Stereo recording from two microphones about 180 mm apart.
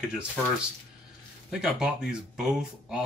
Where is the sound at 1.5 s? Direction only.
5° right (ahead or behind).